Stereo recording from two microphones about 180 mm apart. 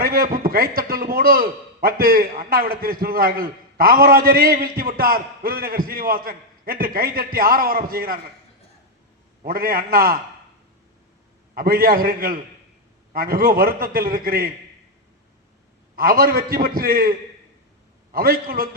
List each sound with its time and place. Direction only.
0.0 s a man's voice: 55° right (ahead or behind)
9.4 s a man's voice: 55° right (ahead or behind)
11.5 s a man's voice: 55° right (ahead or behind)
16.0 s a man's voice: 55° right (ahead or behind)